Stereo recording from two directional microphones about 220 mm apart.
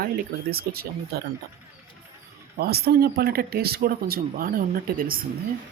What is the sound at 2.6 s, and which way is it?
Speech, 45° right (ahead or behind).